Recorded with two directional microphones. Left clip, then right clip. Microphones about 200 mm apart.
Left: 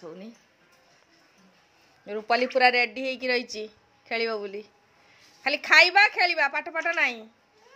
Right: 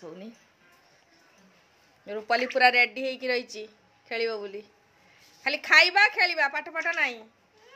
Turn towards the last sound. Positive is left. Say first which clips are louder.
# left 2 dB
turn(degrees=30)  # may be behind; listen again after turning